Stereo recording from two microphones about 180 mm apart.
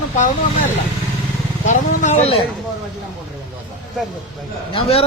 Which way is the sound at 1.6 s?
45° left (ahead or behind).